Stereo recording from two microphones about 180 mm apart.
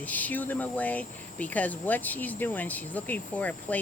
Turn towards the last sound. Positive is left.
turn(degrees=10)  # may be behind; listen again after turning